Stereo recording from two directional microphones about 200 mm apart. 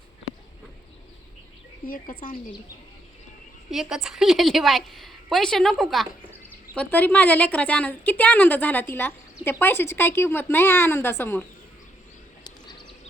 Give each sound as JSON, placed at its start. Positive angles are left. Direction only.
{"t": 1.9, "sound": "speech", "side_deg": 45}
{"t": 3.7, "sound": "a woman's voice", "side_deg": 0}